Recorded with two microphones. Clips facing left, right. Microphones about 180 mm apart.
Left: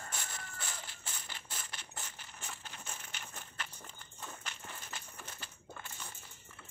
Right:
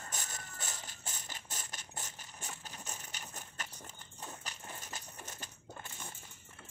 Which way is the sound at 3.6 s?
45° right (ahead or behind).